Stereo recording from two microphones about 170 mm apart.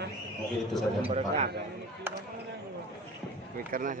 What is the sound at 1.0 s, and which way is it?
Speech, 35° right (ahead or behind).